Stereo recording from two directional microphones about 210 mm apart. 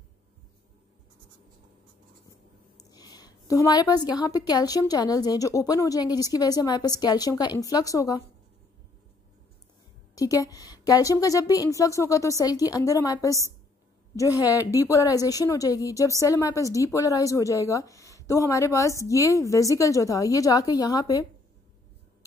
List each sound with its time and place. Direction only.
2.8 s a woman's voice: 20° left (ahead or behind)
10.1 s a woman's voice: 15° left (ahead or behind)